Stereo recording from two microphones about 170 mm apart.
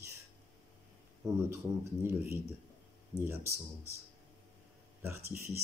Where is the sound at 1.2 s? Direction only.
15° right (ahead or behind).